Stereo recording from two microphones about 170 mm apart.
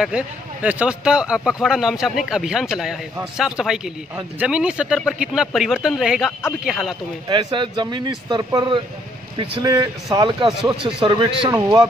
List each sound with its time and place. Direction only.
0.0 s speech: 5° right (ahead or behind)
7.2 s speech: 25° right (ahead or behind)